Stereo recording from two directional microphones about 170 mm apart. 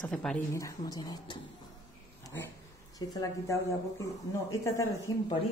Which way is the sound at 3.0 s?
20° left (ahead or behind).